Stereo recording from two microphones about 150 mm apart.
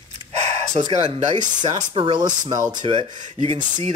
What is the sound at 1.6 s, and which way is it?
Speech, 30° right (ahead or behind).